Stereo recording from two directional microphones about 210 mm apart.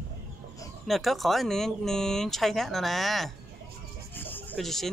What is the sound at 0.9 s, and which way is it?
Speech, centre (ahead or behind).